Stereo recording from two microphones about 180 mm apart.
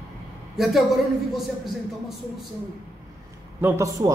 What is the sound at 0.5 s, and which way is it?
Speech, centre (ahead or behind).